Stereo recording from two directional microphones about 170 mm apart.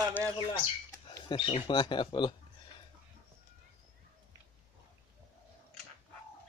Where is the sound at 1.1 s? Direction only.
30° left (ahead or behind).